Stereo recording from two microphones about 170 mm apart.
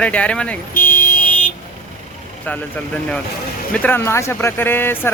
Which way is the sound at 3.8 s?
15° left (ahead or behind).